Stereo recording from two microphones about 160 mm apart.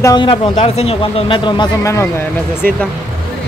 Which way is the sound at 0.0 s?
30° left (ahead or behind).